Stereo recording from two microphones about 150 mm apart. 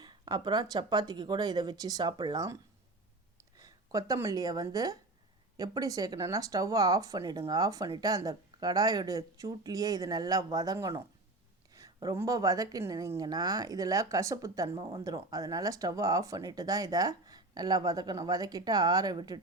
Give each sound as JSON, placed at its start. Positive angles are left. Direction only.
{"t": 0.0, "sound": "speech", "side_deg": -30}
{"t": 3.6, "sound": "speech", "side_deg": -25}